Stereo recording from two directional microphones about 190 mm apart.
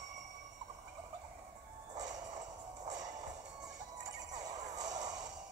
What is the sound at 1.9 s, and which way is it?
Music, 20° right (ahead or behind).